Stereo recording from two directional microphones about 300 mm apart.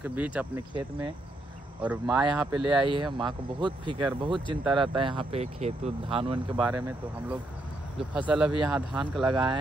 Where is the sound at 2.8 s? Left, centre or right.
Centre.